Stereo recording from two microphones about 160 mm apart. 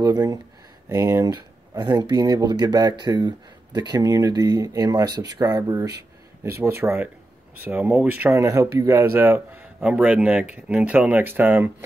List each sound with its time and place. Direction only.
0.0 s speech: 25° right (ahead or behind)